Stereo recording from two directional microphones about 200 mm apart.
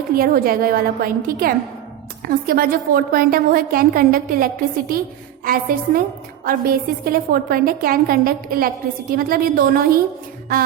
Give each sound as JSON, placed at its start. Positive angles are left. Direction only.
{"t": 0.2, "sound": "a woman's voice", "side_deg": -45}